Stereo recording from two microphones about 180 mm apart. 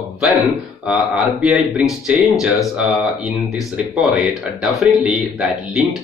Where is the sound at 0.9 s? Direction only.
Centre (ahead or behind).